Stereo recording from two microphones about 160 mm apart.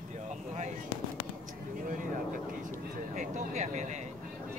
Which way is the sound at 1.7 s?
55° right (ahead or behind).